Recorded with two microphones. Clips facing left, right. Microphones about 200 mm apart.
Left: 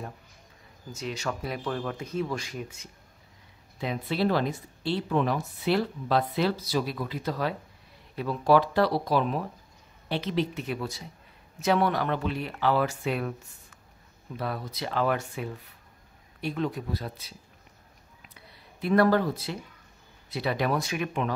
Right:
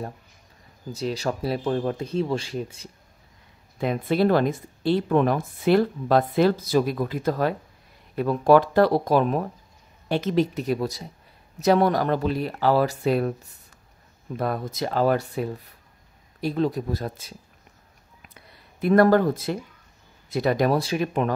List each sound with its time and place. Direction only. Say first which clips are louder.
0.9 s speech: right 6 dB; 35° right (ahead or behind)
3.7 s speech: right 7 dB; 50° right (ahead or behind)
14.3 s speech: right 6 dB; 50° right (ahead or behind)
18.3 s a sound: left 1 dB; 50° right (ahead or behind)
20.2 s speech: right 6 dB; 45° right (ahead or behind)